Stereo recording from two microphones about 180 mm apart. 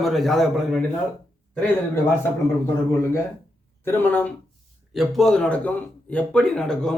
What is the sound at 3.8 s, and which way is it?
A man's voice, 10° left (ahead or behind).